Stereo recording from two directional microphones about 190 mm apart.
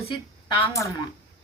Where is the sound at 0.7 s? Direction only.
15° left (ahead or behind).